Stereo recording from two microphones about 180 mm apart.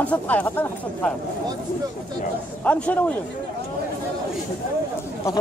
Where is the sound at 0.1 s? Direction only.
10° left (ahead or behind).